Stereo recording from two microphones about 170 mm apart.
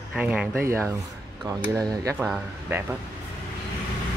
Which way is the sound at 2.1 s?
Centre (ahead or behind).